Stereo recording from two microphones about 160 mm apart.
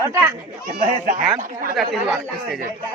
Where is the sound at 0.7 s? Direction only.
55° right (ahead or behind).